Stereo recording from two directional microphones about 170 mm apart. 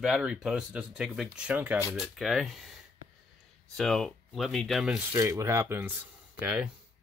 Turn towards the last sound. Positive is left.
turn(degrees=-5)  # may be behind; listen again after turning